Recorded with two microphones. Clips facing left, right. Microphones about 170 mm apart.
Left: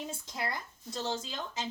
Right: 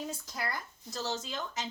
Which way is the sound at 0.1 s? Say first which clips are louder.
Even; 25° left (ahead or behind).